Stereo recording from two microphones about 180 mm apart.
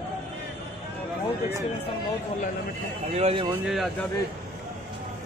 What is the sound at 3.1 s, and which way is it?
Speech, 35° right (ahead or behind).